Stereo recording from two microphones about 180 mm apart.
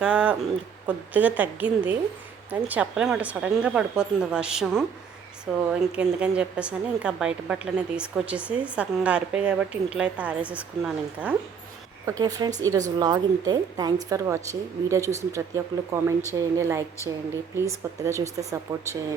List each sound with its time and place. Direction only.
0.0 s a woman's voice: 5° right (ahead or behind)
12.0 s a woman's voice: 20° right (ahead or behind)